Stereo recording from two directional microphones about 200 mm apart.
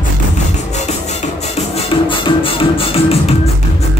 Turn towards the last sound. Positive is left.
turn(degrees=30)  # may be behind; listen again after turning